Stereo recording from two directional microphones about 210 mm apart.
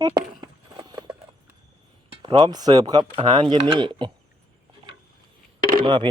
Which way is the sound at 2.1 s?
25° right (ahead or behind).